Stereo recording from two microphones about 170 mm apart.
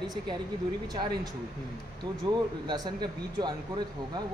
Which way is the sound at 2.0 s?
25° right (ahead or behind).